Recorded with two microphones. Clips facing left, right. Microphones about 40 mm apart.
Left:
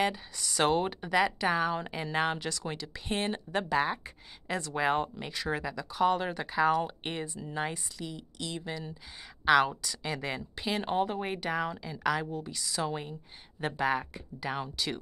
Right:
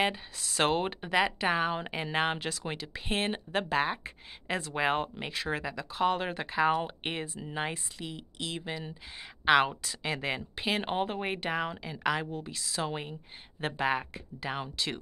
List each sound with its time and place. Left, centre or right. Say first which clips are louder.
0.4 s speech: left 1 dB; centre